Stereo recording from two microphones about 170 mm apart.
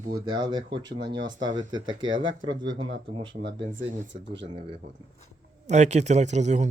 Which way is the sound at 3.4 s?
55° right (ahead or behind).